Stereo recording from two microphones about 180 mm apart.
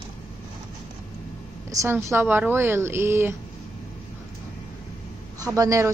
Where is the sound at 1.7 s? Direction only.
15° right (ahead or behind).